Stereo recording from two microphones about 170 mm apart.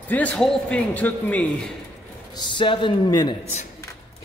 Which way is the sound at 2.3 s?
25° left (ahead or behind).